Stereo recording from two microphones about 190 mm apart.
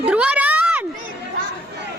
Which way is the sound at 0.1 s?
5° right (ahead or behind).